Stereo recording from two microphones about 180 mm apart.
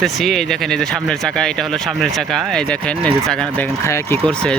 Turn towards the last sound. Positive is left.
turn(degrees=10)  # may be behind; listen again after turning